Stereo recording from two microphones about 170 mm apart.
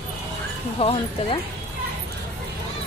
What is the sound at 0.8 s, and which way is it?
Speech, 35° left (ahead or behind).